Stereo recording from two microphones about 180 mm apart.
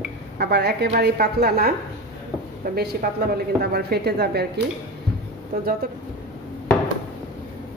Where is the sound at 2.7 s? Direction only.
60° right (ahead or behind).